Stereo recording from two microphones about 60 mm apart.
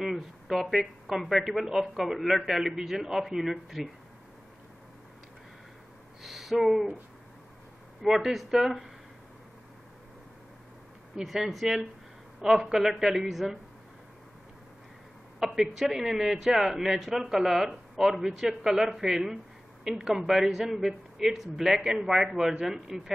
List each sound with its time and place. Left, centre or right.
0.5 s speech: centre
6.2 s speech: centre
8.1 s speech: centre
11.1 s a man's voice: centre
15.3 s a man's voice: centre